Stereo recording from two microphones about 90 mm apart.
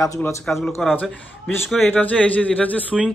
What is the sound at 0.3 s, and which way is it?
Speech, 30° left (ahead or behind).